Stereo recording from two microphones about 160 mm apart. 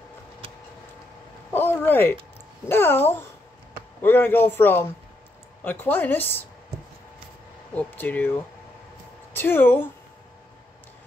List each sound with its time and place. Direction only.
1.5 s a sound: 10° left (ahead or behind)
2.7 s a man's voice: 15° left (ahead or behind)
7.7 s a man's voice: 10° left (ahead or behind)